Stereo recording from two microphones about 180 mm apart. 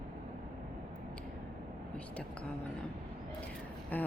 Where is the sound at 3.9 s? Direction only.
10° left (ahead or behind).